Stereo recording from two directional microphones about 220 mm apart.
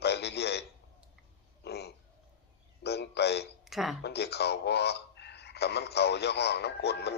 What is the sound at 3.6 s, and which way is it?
Speech, centre (ahead or behind).